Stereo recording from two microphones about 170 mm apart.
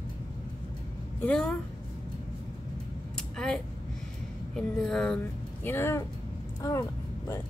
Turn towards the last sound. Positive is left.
turn(degrees=20)  # may be behind; listen again after turning